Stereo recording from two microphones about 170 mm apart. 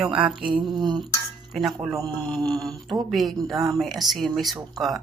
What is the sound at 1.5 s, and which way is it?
Speech, centre (ahead or behind).